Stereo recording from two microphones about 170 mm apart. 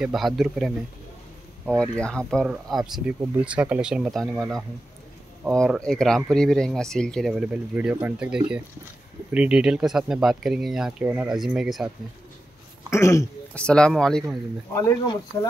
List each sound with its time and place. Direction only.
0.0 s speech: centre (ahead or behind)
1.8 s speech: 5° left (ahead or behind)
12.9 s speech: 15° left (ahead or behind)
13.6 s speech: 5° left (ahead or behind)
14.8 s speech: 20° left (ahead or behind)